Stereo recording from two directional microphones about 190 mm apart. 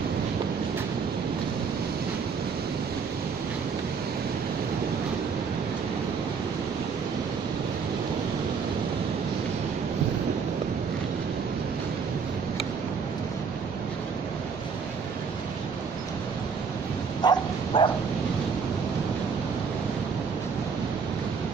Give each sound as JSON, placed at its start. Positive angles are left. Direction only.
{"t": 17.2, "sound": "bow-wow", "side_deg": 20}